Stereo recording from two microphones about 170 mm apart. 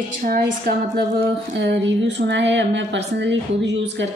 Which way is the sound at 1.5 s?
90° right.